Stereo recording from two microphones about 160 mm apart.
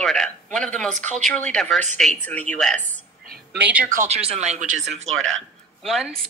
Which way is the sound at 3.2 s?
70° right (ahead or behind).